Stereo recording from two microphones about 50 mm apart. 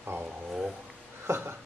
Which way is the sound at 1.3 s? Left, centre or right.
Right.